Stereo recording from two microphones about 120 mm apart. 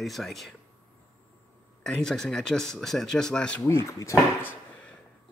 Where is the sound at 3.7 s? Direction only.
25° left (ahead or behind).